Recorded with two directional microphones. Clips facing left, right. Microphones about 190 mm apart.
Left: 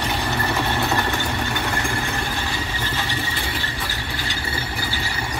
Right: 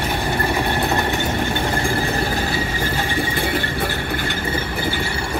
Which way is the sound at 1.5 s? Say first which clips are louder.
Right 4 dB; 30° right (ahead or behind).